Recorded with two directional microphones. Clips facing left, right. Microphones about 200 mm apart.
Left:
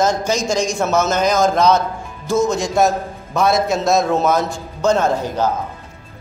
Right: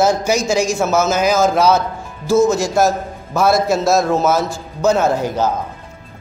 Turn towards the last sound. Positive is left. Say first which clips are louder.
# right 2 dB
turn(degrees=-10)  # may be behind; listen again after turning